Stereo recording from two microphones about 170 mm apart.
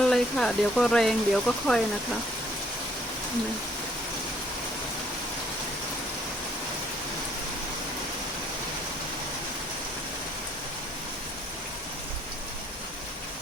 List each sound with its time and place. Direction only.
0.0 s speech: 5° left (ahead or behind)